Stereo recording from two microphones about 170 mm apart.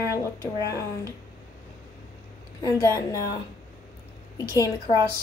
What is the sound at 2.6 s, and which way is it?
Speech, 20° left (ahead or behind).